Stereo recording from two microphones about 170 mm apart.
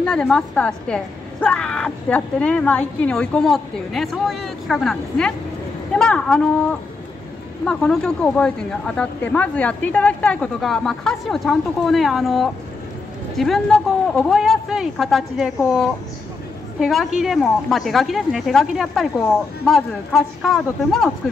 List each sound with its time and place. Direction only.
0.0 s a woman's voice: 5° left (ahead or behind)